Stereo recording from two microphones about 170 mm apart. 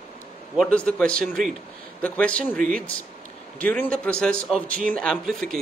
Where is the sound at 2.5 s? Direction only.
50° right (ahead or behind).